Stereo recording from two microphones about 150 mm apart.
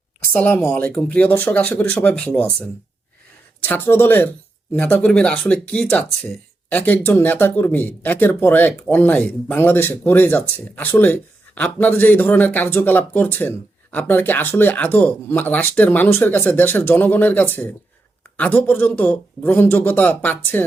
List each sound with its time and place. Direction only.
0.3 s speech: 10° left (ahead or behind)